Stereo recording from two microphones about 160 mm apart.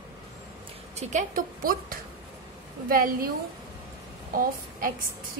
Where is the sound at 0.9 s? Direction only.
55° right (ahead or behind).